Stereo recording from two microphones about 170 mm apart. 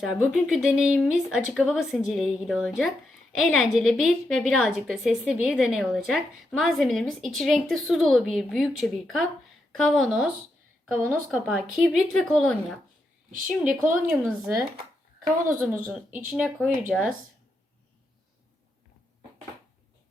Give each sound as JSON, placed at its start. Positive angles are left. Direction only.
{"t": 0.0, "sound": "a woman's voice", "side_deg": -5}